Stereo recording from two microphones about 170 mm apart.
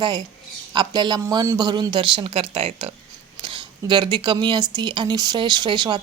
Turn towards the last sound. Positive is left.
turn(degrees=-25)  # may be behind; listen again after turning